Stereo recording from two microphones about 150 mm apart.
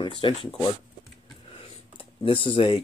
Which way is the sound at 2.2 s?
35° left (ahead or behind).